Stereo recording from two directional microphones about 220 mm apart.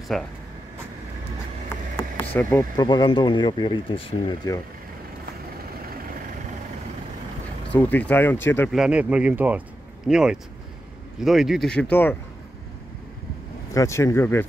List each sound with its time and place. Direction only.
0.1 s speech: centre (ahead or behind)
2.0 s a sound: 10° left (ahead or behind)
2.9 s speech: 20° left (ahead or behind)
7.7 s speech: 5° left (ahead or behind)
8.7 s speech: 5° right (ahead or behind)
13.7 s speech: 15° left (ahead or behind)